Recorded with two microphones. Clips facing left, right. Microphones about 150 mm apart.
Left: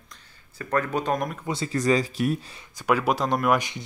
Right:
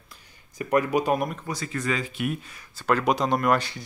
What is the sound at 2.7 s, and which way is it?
Speech, 10° left (ahead or behind).